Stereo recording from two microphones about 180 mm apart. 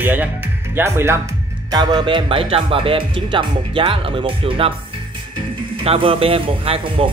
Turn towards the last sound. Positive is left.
turn(degrees=-30)  # may be behind; listen again after turning